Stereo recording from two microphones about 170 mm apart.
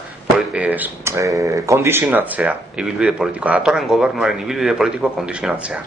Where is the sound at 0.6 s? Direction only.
10° right (ahead or behind).